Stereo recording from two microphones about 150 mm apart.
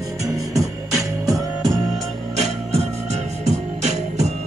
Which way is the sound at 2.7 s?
45° right (ahead or behind).